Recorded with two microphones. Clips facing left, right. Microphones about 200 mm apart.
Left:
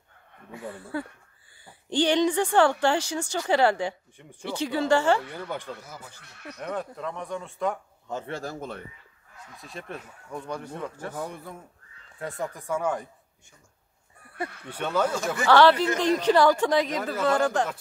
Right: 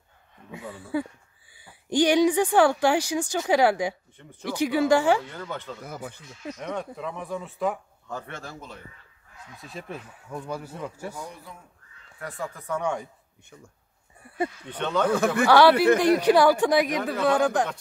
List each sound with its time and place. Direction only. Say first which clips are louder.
0.5 s speech: right 3 dB; 15° right (ahead or behind)
4.2 s speech: even; 10° left (ahead or behind)
4.5 s speech: right 3 dB; 10° right (ahead or behind)
5.8 s speech: right 7 dB; 60° right (ahead or behind)
6.2 s speech: right 6 dB; 65° left (ahead or behind)
6.6 s speech: left 1 dB; centre (ahead or behind)
8.3 s speech: left 6 dB; 35° left (ahead or behind)
9.5 s speech: right 1 dB; centre (ahead or behind)
11.1 s speech: left 4 dB; 55° left (ahead or behind)
12.2 s speech: left 2 dB; 20° left (ahead or behind); by 13.1 s 5° left (ahead or behind)
14.7 s speech: left 1 dB; 5° left (ahead or behind)
15.0 s speech: right 5 dB; 60° right (ahead or behind)
15.4 s speech: right 1 dB; 10° right (ahead or behind)